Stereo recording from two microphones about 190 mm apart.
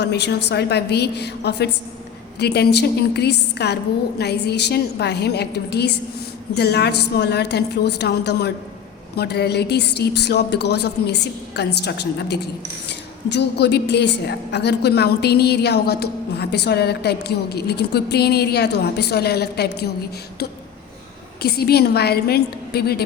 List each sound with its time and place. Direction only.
0.0 s a woman's voice: 60° left (ahead or behind)
21.4 s a woman's voice: 55° left (ahead or behind)